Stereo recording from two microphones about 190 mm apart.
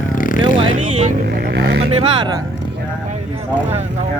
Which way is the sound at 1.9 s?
25° right (ahead or behind).